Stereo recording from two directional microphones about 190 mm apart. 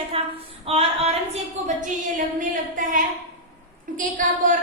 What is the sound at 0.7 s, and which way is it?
A woman's voice, 30° right (ahead or behind).